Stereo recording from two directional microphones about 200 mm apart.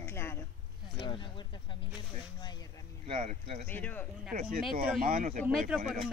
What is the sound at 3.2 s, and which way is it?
Speech, 35° right (ahead or behind).